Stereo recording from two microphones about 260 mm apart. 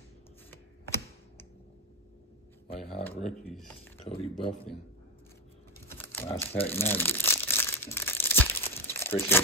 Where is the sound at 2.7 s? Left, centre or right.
Left.